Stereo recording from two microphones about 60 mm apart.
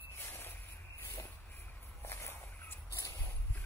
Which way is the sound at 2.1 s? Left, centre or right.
Left.